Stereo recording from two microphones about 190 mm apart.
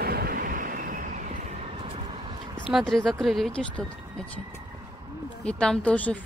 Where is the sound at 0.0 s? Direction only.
55° right (ahead or behind); by 2.3 s 30° right (ahead or behind).